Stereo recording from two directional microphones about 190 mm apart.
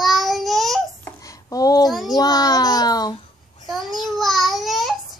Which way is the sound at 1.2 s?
20° left (ahead or behind).